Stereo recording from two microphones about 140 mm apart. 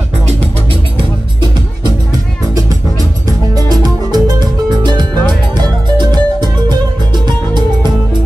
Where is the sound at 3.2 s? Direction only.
25° right (ahead or behind).